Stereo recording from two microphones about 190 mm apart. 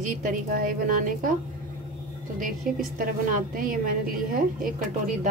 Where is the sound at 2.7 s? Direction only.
50° right (ahead or behind).